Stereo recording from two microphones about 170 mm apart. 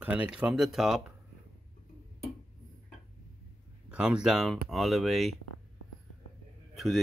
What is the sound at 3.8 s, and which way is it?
Speech, 5° right (ahead or behind).